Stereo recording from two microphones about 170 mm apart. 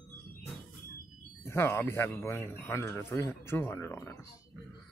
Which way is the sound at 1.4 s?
15° left (ahead or behind).